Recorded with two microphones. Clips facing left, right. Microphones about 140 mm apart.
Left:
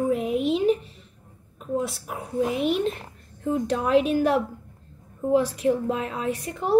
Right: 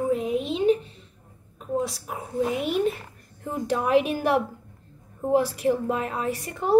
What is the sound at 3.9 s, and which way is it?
Speech, 60° right (ahead or behind).